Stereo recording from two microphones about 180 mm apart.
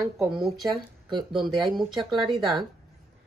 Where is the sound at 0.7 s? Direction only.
25° right (ahead or behind).